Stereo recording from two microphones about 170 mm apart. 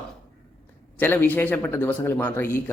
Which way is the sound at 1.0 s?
10° left (ahead or behind).